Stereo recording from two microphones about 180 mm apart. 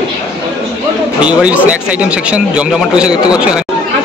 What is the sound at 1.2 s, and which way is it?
A man's voice, 5° right (ahead or behind).